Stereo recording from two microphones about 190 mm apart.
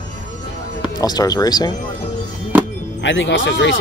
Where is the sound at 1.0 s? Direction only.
20° left (ahead or behind).